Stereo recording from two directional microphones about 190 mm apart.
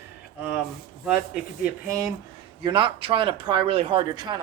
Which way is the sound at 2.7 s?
25° right (ahead or behind).